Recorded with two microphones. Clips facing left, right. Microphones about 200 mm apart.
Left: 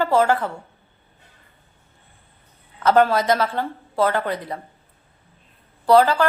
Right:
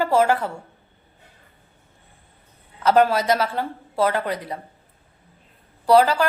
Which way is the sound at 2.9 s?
10° right (ahead or behind).